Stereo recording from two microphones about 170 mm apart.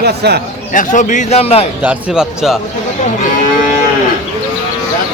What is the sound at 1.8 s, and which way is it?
Speech, 5° right (ahead or behind).